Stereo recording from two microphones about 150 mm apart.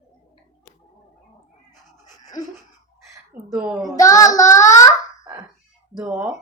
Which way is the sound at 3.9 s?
25° left (ahead or behind).